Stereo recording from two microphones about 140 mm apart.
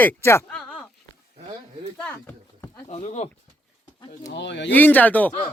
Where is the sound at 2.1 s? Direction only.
20° left (ahead or behind).